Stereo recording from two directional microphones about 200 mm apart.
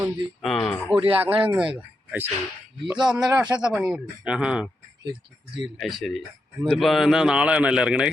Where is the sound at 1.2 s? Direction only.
10° right (ahead or behind).